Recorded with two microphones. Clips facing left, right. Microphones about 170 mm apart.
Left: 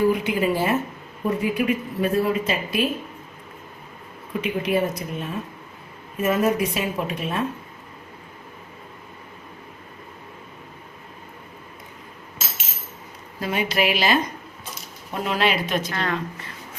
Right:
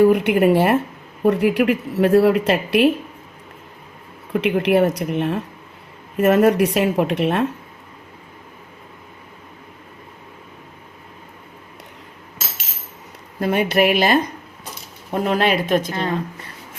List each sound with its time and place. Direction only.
0.0 s speech: 65° right (ahead or behind)
4.3 s speech: 70° right (ahead or behind)
13.4 s speech: 55° right (ahead or behind)